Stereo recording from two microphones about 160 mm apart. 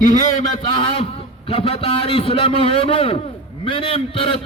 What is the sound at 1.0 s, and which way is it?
A man's voice, 35° left (ahead or behind).